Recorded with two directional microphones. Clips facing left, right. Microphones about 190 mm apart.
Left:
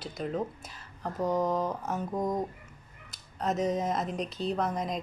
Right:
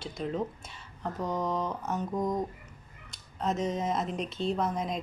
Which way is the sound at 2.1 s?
25° left (ahead or behind).